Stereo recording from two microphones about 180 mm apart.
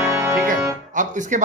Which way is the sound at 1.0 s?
45° right (ahead or behind).